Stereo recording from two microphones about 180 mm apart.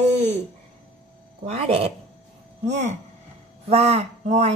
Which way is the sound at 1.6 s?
35° right (ahead or behind).